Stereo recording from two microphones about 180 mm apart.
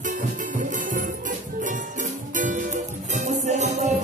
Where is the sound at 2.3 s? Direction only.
45° right (ahead or behind).